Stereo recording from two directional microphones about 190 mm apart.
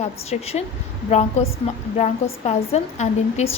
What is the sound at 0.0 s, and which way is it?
A woman's voice, 35° left (ahead or behind).